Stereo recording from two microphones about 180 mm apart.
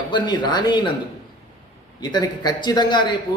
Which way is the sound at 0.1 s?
25° left (ahead or behind).